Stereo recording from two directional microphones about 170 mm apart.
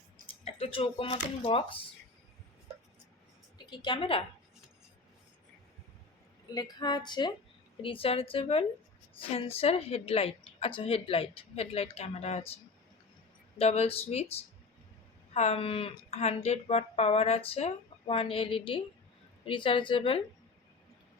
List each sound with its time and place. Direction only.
0.6 s a woman's voice: 30° left (ahead or behind)
3.7 s a woman's voice: 30° left (ahead or behind)
6.5 s a woman's voice: 25° left (ahead or behind)
13.6 s a woman's voice: 35° left (ahead or behind)
15.3 s a woman's voice: 40° left (ahead or behind)